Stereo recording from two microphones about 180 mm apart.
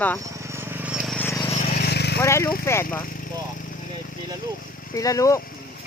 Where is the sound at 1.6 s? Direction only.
55° left (ahead or behind).